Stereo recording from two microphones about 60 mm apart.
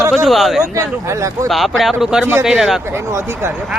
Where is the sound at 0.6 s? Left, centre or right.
Right.